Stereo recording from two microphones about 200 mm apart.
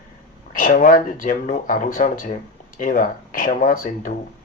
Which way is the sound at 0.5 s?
40° left (ahead or behind).